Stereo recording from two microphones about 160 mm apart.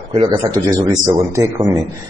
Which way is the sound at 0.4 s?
20° right (ahead or behind).